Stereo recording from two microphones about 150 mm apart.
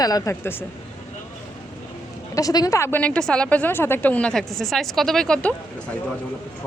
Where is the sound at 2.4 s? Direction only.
25° left (ahead or behind); by 5.5 s 5° left (ahead or behind).